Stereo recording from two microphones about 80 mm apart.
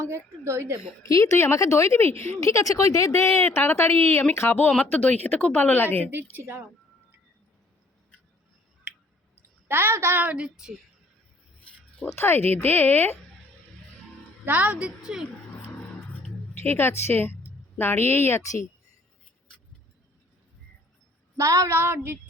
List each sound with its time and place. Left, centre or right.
0.0 s a woman's voice: right
0.8 s speech: left
6.1 s a woman's voice: right
9.6 s a woman's voice: right; by 10.8 s centre
12.0 s speech: left
14.4 s a woman's voice: centre
16.6 s speech: left
21.3 s a woman's voice: right
21.8 s a woman's voice: right